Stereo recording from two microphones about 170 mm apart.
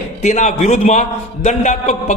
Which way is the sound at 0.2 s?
45° left (ahead or behind).